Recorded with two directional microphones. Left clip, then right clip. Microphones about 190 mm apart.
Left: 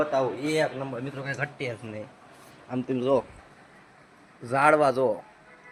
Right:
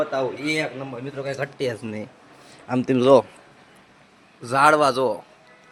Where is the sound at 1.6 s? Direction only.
45° right (ahead or behind).